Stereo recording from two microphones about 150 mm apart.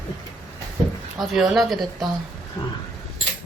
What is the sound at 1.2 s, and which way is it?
Speech, centre (ahead or behind).